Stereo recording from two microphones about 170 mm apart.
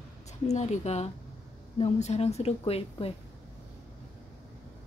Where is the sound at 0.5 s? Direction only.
40° left (ahead or behind).